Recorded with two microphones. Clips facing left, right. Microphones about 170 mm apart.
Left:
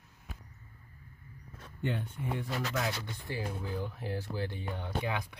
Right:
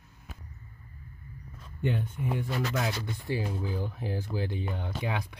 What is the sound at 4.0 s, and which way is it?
Speech, 15° right (ahead or behind).